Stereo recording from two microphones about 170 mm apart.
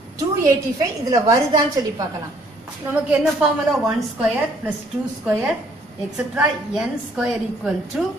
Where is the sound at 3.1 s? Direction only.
5° right (ahead or behind).